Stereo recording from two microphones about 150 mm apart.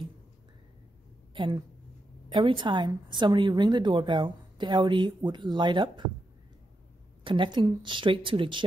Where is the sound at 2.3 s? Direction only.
35° right (ahead or behind).